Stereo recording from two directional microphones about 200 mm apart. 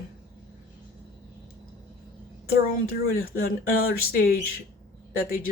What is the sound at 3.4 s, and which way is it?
Speech, 50° left (ahead or behind).